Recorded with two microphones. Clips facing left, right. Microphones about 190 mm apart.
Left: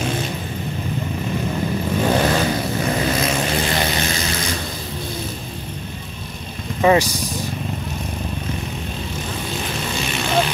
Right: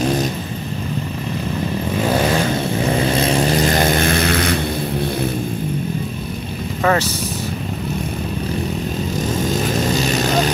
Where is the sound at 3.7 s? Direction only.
50° right (ahead or behind).